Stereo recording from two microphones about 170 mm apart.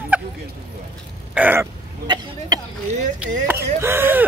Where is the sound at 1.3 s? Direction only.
10° right (ahead or behind).